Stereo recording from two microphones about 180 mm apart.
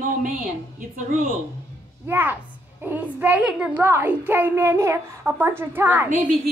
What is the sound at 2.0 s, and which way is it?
A child's voice, 10° right (ahead or behind).